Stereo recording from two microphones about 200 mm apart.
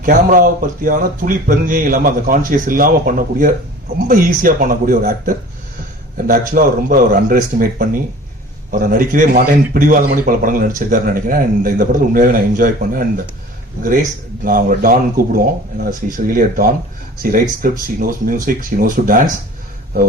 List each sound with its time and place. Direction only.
0.0 s speech: 40° right (ahead or behind)
14.4 s speech: 45° right (ahead or behind)